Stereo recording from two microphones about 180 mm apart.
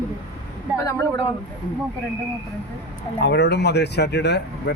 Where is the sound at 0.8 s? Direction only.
15° left (ahead or behind).